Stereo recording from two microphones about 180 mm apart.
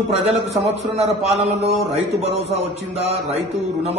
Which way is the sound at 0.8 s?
35° right (ahead or behind).